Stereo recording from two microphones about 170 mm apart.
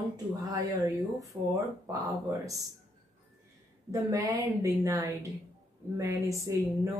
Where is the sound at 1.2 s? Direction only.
20° right (ahead or behind).